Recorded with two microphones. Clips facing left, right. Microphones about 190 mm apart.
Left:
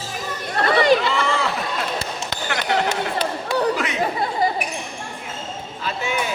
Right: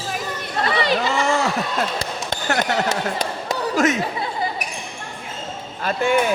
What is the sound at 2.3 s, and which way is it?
Basketball bounce, 45° right (ahead or behind).